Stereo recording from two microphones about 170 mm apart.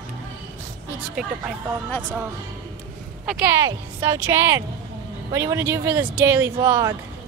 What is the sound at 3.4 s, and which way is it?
A woman's voice, 15° right (ahead or behind).